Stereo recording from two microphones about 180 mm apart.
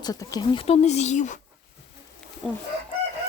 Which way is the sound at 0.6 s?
35° left (ahead or behind).